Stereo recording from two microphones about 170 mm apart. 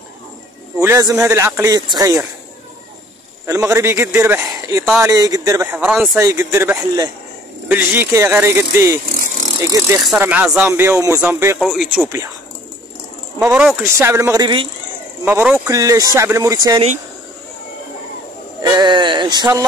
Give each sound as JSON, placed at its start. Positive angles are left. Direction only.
{"t": 0.7, "sound": "speech", "side_deg": -15}
{"t": 3.4, "sound": "speech", "side_deg": -15}
{"t": 13.4, "sound": "speech", "side_deg": -5}
{"t": 15.2, "sound": "speech", "side_deg": -10}
{"t": 18.6, "sound": "a sound", "side_deg": -25}